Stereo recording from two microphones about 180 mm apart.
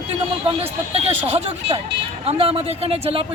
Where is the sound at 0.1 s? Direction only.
35° right (ahead or behind).